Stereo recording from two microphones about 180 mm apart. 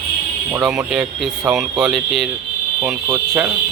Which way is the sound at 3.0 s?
20° right (ahead or behind).